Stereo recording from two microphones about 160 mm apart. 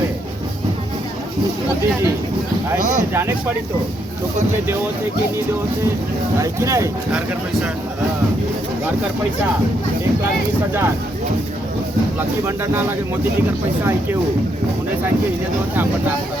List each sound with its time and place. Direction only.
3.1 s speech: 15° right (ahead or behind)
6.4 s speech: 20° right (ahead or behind)